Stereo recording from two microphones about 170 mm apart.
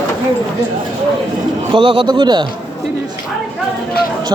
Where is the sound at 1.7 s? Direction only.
30° right (ahead or behind).